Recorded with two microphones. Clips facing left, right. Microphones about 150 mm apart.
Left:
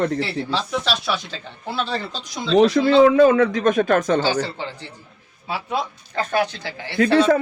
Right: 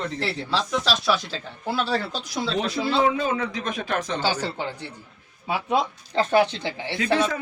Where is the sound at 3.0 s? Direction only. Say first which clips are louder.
Left 10 dB; 65° left (ahead or behind); by 4.2 s 50° left (ahead or behind).